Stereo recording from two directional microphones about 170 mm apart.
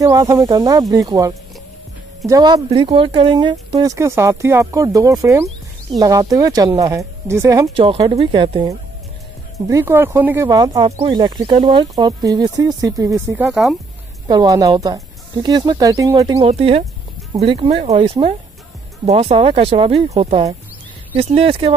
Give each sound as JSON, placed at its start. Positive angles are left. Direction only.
{"t": 0.0, "sound": "speech", "side_deg": -20}
{"t": 7.7, "sound": "speech", "side_deg": -35}
{"t": 9.7, "sound": "speech", "side_deg": -15}
{"t": 10.6, "sound": "speech", "side_deg": -25}
{"t": 14.2, "sound": "speech", "side_deg": -25}
{"t": 16.3, "sound": "speech", "side_deg": -35}